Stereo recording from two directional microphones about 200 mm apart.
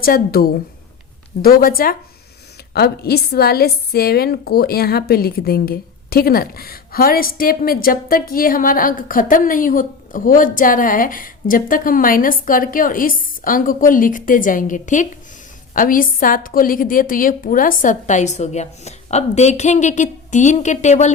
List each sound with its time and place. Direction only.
0.0 s a woman's voice: 45° left (ahead or behind)